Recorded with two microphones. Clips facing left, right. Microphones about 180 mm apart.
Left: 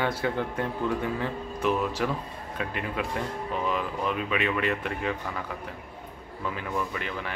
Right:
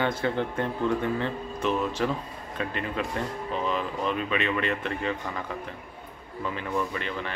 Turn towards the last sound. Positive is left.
turn(degrees=10)  # may be behind; listen again after turning